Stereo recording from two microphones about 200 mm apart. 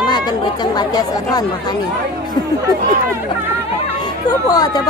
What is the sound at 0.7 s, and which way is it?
Speech, 20° left (ahead or behind).